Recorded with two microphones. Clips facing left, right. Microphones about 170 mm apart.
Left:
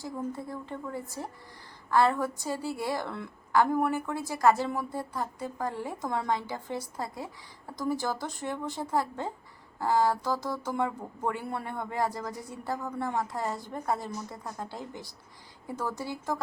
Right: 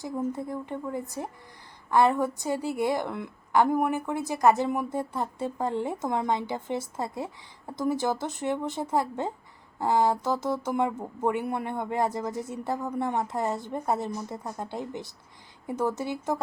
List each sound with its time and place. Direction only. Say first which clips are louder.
0.0 s a woman's voice: right 4 dB; 20° right (ahead or behind)